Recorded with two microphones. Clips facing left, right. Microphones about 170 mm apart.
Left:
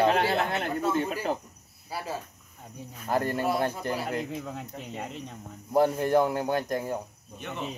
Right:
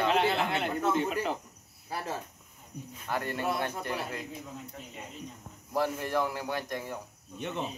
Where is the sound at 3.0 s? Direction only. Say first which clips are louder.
Left 5 dB; 40° left (ahead or behind).